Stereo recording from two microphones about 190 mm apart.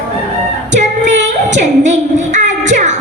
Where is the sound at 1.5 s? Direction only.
40° right (ahead or behind).